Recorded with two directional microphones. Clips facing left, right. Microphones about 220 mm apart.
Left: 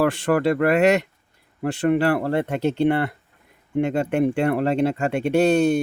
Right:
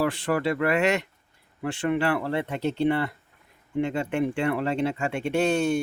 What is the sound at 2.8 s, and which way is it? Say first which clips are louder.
Speech: left 3 dB; 60° left (ahead or behind).